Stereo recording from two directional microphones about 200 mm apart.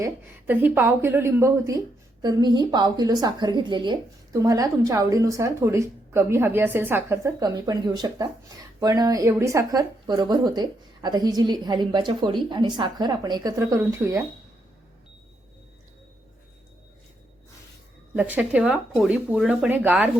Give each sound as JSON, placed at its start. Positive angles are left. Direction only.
{"t": 0.0, "sound": "a woman's voice", "side_deg": -10}
{"t": 18.1, "sound": "speech", "side_deg": -10}